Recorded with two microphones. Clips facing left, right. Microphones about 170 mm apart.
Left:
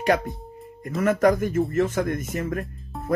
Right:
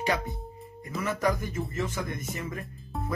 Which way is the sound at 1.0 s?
50° left (ahead or behind).